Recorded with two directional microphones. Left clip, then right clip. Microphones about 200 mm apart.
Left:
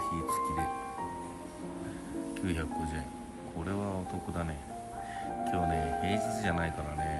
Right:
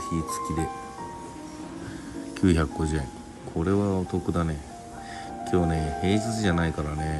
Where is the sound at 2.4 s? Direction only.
25° right (ahead or behind).